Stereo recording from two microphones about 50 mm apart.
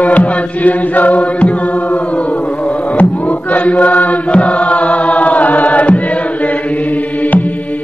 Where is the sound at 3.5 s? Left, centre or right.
Left.